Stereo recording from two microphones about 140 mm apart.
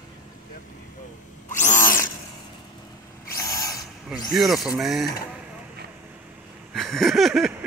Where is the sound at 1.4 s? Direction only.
60° left (ahead or behind).